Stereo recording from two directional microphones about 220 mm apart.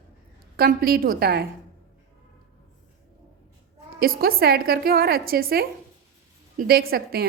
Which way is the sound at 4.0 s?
45° right (ahead or behind).